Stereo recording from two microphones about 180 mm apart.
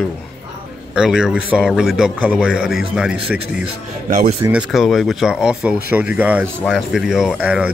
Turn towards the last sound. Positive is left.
turn(degrees=-5)  # may be behind; listen again after turning